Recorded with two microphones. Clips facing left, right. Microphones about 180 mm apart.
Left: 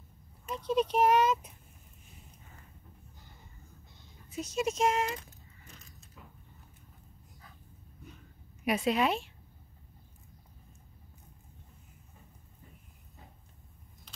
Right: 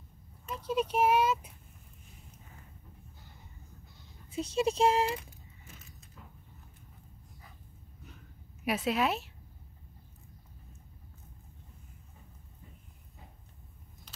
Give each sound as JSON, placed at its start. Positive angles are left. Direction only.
{"t": 0.5, "sound": "speech", "side_deg": -5}
{"t": 4.3, "sound": "speech", "side_deg": -30}
{"t": 5.2, "sound": "a sound", "side_deg": -5}
{"t": 8.6, "sound": "a woman's voice", "side_deg": -5}